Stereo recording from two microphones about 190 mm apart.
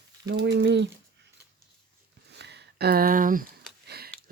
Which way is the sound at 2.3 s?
65° right (ahead or behind).